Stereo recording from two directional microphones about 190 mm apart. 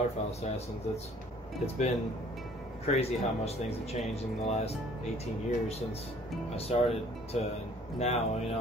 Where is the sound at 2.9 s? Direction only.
35° left (ahead or behind).